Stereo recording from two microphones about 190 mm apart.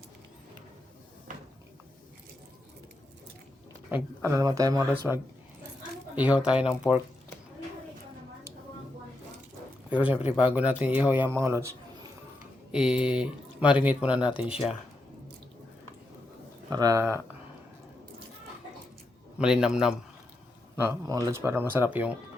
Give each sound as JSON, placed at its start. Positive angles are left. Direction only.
{"t": 3.9, "sound": "speech", "side_deg": -15}
{"t": 6.3, "sound": "speech", "side_deg": -5}
{"t": 10.1, "sound": "speech", "side_deg": 30}
{"t": 10.4, "sound": "speech", "side_deg": -5}
{"t": 12.7, "sound": "speech", "side_deg": -5}
{"t": 16.6, "sound": "speech", "side_deg": -20}
{"t": 19.4, "sound": "speech", "side_deg": -5}
{"t": 20.7, "sound": "speech", "side_deg": -15}